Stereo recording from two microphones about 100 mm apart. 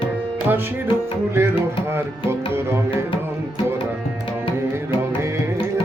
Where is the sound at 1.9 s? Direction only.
25° right (ahead or behind).